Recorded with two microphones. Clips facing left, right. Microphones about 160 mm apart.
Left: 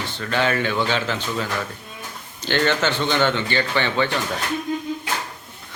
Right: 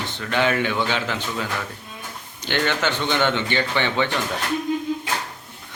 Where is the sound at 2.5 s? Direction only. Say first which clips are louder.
Left 2 dB; 15° right (ahead or behind).